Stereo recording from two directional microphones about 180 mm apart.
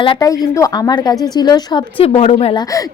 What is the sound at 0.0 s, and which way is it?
A woman's voice, 25° left (ahead or behind).